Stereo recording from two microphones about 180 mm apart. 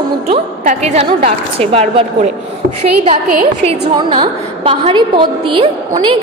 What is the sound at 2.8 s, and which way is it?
Speech, 45° right (ahead or behind).